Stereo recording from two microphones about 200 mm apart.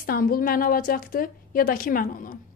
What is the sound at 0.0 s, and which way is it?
A woman's voice, 45° left (ahead or behind).